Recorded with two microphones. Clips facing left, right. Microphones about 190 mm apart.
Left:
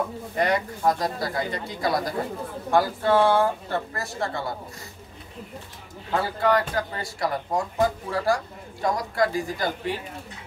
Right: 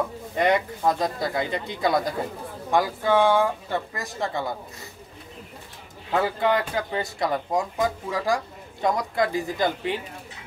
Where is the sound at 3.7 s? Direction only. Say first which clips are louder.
Even; 15° right (ahead or behind).